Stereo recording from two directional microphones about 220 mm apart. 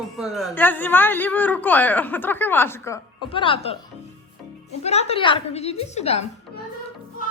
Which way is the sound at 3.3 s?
25° left (ahead or behind).